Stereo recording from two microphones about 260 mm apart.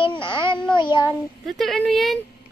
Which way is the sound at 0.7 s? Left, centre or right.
Centre.